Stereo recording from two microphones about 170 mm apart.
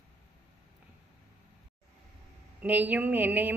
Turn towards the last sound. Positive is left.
turn(degrees=-10)  # may be behind; listen again after turning